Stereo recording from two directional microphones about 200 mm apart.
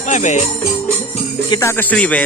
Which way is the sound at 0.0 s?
35° left (ahead or behind).